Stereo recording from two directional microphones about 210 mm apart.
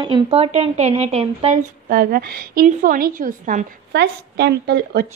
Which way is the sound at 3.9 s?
50° right (ahead or behind).